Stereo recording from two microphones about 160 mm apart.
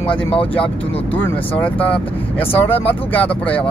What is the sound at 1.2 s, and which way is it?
Speech, 10° left (ahead or behind).